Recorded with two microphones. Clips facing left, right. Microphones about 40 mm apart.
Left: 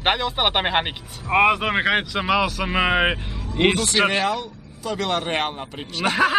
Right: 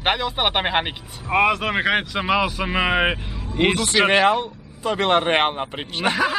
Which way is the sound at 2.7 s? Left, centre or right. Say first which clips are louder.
Left 1 dB; centre.